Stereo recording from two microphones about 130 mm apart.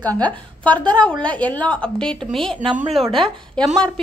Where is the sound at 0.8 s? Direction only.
35° right (ahead or behind).